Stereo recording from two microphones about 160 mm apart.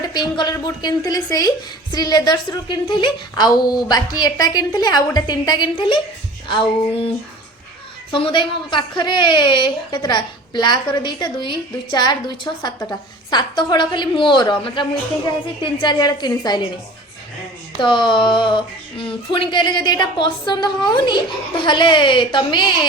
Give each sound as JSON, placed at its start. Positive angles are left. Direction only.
{"t": 0.1, "sound": "a woman's voice", "side_deg": 25}
{"t": 6.5, "sound": "female singing", "side_deg": 30}
{"t": 8.1, "sound": "a woman's voice", "side_deg": 30}
{"t": 17.7, "sound": "a woman's voice", "side_deg": 30}